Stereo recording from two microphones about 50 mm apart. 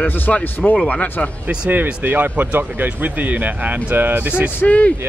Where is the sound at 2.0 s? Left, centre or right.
Right.